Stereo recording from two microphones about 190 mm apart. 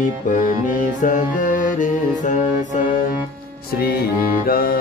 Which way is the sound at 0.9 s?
45° left (ahead or behind).